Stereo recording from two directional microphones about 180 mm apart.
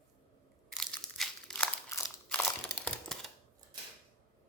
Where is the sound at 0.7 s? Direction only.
Centre (ahead or behind).